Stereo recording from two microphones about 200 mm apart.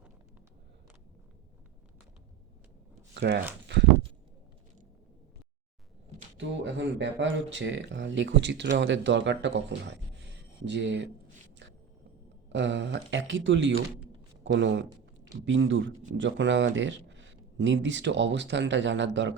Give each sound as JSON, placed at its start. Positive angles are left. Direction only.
{"t": 3.2, "sound": "speech", "side_deg": -55}
{"t": 6.3, "sound": "speech", "side_deg": -65}
{"t": 11.6, "sound": "a sound", "side_deg": -65}
{"t": 12.5, "sound": "speech", "side_deg": -65}